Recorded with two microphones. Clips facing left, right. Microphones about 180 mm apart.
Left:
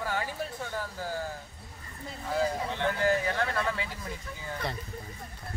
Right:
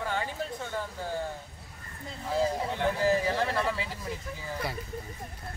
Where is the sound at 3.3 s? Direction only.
30° right (ahead or behind).